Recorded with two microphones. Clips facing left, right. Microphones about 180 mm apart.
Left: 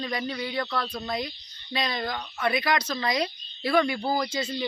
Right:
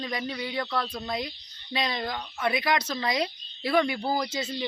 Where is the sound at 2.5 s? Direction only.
20° right (ahead or behind).